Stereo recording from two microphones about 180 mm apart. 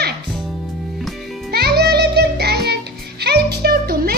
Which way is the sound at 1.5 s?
60° right (ahead or behind).